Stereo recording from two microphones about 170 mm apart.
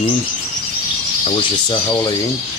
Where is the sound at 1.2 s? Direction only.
30° left (ahead or behind).